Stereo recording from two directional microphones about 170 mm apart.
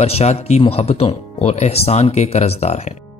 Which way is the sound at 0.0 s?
40° left (ahead or behind).